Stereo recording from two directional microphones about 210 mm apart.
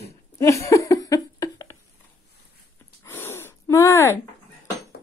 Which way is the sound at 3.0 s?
10° left (ahead or behind).